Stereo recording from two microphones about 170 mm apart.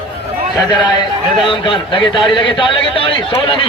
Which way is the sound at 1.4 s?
30° left (ahead or behind).